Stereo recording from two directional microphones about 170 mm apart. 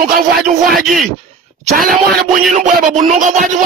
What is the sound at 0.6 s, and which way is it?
Speech, centre (ahead or behind).